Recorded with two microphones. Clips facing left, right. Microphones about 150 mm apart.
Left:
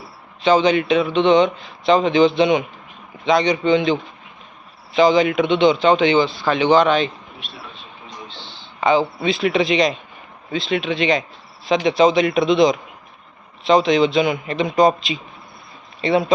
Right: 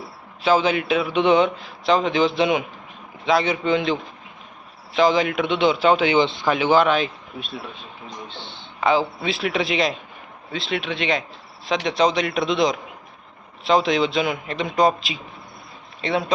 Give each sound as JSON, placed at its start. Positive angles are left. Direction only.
{"t": 0.4, "sound": "speech", "side_deg": -5}
{"t": 6.1, "sound": "speech", "side_deg": -20}
{"t": 6.5, "sound": "speech", "side_deg": -5}
{"t": 8.3, "sound": "a sound", "side_deg": -55}
{"t": 8.8, "sound": "speech", "side_deg": 0}